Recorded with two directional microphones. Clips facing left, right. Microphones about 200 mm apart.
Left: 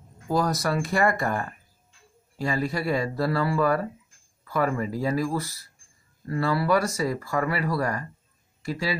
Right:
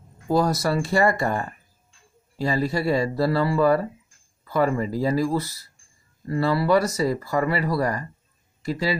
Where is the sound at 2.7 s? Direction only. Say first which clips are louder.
Right 4 dB; 30° right (ahead or behind).